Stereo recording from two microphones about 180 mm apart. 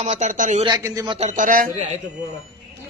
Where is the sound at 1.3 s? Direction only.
45° right (ahead or behind).